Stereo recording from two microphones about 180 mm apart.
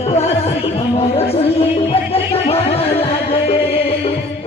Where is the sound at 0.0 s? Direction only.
35° left (ahead or behind).